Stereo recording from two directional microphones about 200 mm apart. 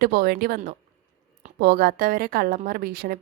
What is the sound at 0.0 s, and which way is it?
A woman's voice, 50° right (ahead or behind).